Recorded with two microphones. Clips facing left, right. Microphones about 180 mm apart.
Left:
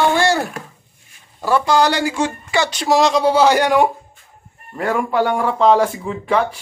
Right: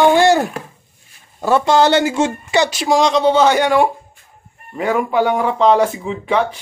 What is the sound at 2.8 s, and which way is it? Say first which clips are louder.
Speech: left 1 dB; 5° left (ahead or behind).